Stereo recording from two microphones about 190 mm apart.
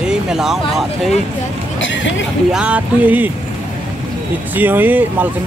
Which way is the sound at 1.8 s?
75° left (ahead or behind).